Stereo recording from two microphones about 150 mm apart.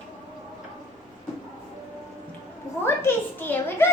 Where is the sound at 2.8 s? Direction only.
15° left (ahead or behind).